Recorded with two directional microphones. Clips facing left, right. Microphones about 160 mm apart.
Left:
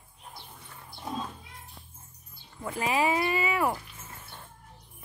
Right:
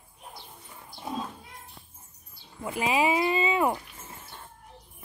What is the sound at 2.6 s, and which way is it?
Speech, 15° right (ahead or behind).